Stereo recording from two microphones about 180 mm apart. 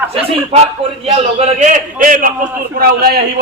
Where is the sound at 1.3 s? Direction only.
45° right (ahead or behind).